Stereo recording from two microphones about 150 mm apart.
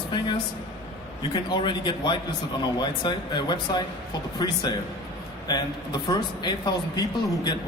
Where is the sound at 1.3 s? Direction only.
30° left (ahead or behind).